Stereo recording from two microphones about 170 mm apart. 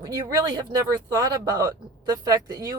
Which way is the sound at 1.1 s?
25° right (ahead or behind).